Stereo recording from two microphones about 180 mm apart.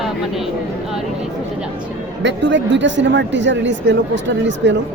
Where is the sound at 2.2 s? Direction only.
90° right.